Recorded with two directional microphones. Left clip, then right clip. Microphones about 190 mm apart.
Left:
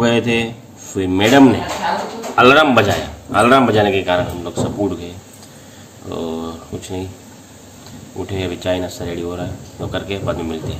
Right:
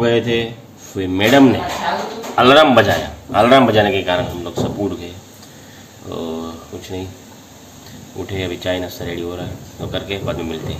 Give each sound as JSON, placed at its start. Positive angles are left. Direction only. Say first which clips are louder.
{"t": 0.0, "sound": "a man's voice", "louder": "even", "side_deg": 20}
{"t": 6.0, "sound": "speech", "louder": "left 1 dB", "side_deg": 10}
{"t": 8.2, "sound": "speech", "louder": "even", "side_deg": 5}